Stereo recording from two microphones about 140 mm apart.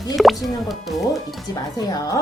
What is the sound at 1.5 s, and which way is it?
Speech, 30° left (ahead or behind).